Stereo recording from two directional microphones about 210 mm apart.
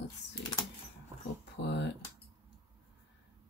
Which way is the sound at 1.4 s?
55° left (ahead or behind).